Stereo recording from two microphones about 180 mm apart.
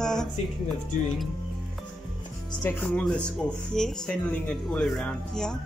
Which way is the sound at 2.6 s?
10° left (ahead or behind).